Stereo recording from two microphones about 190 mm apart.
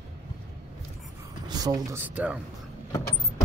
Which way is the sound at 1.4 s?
20° right (ahead or behind).